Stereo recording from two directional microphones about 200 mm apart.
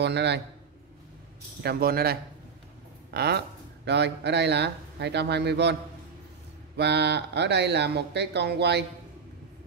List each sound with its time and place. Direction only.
0.0 s speech: 60° right (ahead or behind)
1.6 s a man's voice: 50° right (ahead or behind)
6.8 s speech: 55° right (ahead or behind)